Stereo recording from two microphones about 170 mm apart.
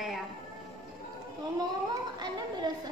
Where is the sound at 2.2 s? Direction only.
25° right (ahead or behind).